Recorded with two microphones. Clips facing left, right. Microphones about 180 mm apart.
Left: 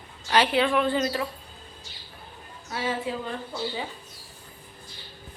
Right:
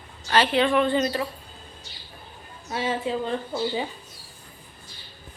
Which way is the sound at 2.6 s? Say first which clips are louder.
Right 3 dB; 25° right (ahead or behind).